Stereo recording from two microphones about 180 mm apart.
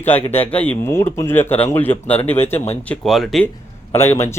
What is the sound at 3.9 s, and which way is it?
Speech, 15° left (ahead or behind).